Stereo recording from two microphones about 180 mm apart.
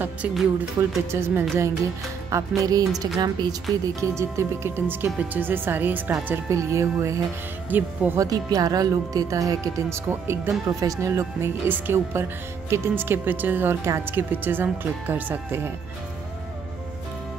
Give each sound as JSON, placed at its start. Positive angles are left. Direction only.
{"t": 0.0, "sound": "speech", "side_deg": -5}
{"t": 2.3, "sound": "music", "side_deg": -20}
{"t": 3.8, "sound": "speech", "side_deg": -15}